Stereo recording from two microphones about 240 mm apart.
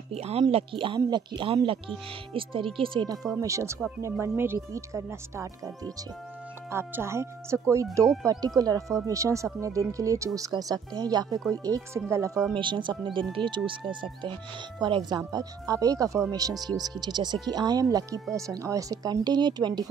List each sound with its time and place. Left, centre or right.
0.1 s speech: right